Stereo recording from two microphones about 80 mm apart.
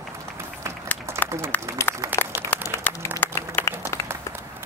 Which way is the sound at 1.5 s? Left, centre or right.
Left.